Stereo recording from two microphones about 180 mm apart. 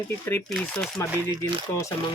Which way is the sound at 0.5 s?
5° left (ahead or behind).